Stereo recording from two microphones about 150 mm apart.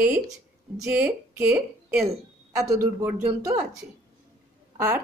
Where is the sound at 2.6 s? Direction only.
20° right (ahead or behind).